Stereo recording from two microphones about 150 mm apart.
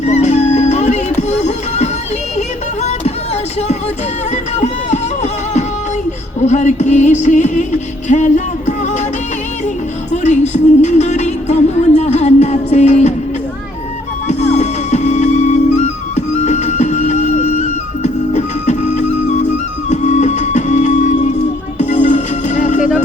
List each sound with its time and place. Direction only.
0.0 s music: 50° left (ahead or behind)
4.5 s music: 50° left (ahead or behind)
10.2 s music: 50° left (ahead or behind)
14.3 s music: 50° left (ahead or behind)